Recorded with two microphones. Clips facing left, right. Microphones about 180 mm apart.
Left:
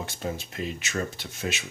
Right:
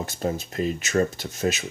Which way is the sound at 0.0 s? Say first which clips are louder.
Right 5 dB; 40° right (ahead or behind).